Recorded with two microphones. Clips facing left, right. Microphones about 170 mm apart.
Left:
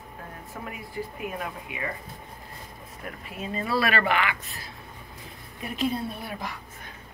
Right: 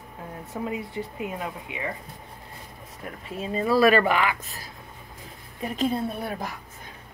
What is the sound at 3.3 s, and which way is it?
Speech, 30° right (ahead or behind).